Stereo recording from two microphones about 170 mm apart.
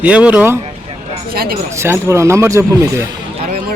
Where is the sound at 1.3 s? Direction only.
60° right (ahead or behind).